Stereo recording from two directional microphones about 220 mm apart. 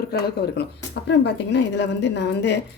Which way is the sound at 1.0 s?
50° left (ahead or behind).